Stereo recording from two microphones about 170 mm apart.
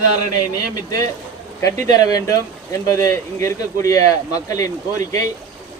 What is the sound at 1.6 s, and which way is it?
Speech, 20° left (ahead or behind).